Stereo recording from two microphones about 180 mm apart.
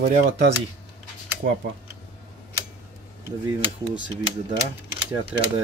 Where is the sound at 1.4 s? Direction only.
55° right (ahead or behind).